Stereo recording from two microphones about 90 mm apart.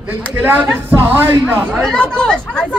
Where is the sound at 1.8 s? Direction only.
10° left (ahead or behind).